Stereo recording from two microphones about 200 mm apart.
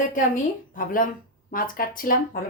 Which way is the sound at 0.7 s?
45° left (ahead or behind).